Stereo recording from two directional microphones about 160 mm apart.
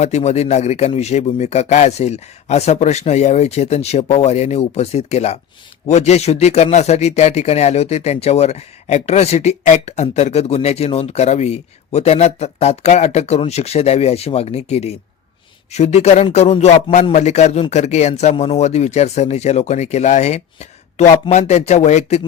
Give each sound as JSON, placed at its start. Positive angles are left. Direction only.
{"t": 0.0, "sound": "speech", "side_deg": 45}